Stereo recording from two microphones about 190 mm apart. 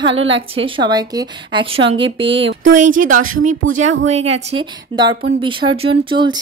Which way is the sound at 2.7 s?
45° right (ahead or behind).